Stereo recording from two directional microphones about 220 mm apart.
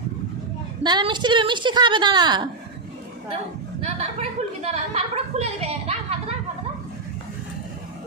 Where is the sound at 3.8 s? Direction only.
30° right (ahead or behind).